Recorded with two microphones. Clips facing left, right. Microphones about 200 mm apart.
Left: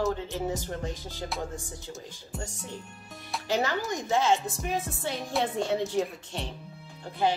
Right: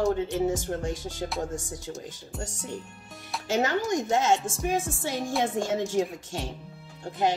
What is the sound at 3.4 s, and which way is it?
Speech, 45° right (ahead or behind).